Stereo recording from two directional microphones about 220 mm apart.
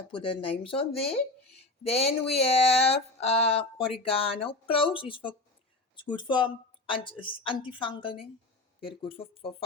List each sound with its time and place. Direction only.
0.1 s speech: 25° left (ahead or behind)